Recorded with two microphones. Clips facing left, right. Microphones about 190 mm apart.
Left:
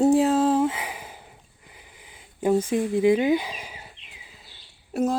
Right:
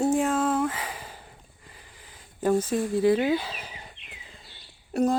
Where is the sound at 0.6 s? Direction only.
10° left (ahead or behind).